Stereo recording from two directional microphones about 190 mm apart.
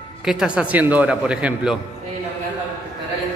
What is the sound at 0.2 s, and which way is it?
Speech, 5° right (ahead or behind).